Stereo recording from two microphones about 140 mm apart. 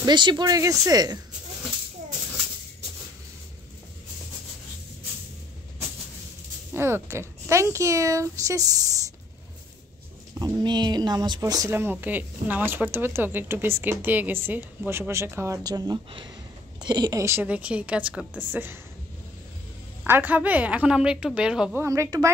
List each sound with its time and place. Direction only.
0.0 s speech: 35° right (ahead or behind)
6.7 s speech: 15° right (ahead or behind)
10.4 s speech: 30° right (ahead or behind)
11.7 s speech: 15° right (ahead or behind)
20.1 s speech: 15° right (ahead or behind)
21.7 s speech: 20° right (ahead or behind)